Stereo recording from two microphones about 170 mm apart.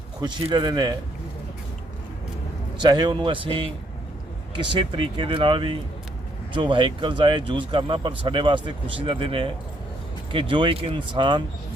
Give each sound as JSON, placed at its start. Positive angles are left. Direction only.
{"t": 0.2, "sound": "speech", "side_deg": -25}
{"t": 2.7, "sound": "speech", "side_deg": -25}